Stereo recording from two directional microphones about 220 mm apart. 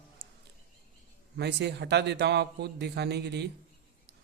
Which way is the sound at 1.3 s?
50° right (ahead or behind).